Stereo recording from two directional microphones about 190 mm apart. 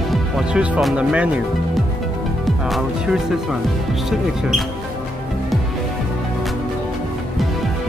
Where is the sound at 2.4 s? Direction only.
Centre (ahead or behind).